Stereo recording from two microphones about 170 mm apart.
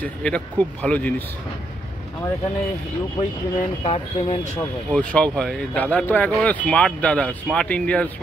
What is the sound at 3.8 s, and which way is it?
Speech, 35° left (ahead or behind).